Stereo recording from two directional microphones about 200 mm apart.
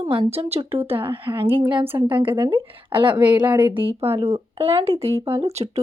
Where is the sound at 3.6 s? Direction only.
25° right (ahead or behind).